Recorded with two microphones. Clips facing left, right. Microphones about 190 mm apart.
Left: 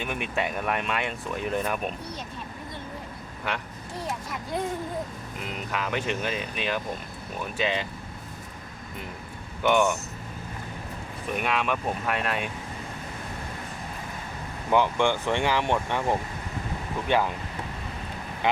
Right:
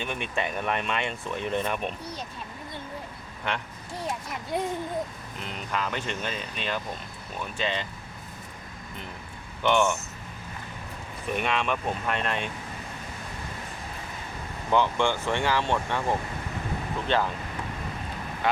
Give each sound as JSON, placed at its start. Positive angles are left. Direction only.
{"t": 0.0, "sound": "speech", "side_deg": 10}
{"t": 3.5, "sound": "speech", "side_deg": 5}
{"t": 5.5, "sound": "speech", "side_deg": 5}
{"t": 9.6, "sound": "speech", "side_deg": 10}
{"t": 11.3, "sound": "speech", "side_deg": 5}
{"t": 14.7, "sound": "speech", "side_deg": 15}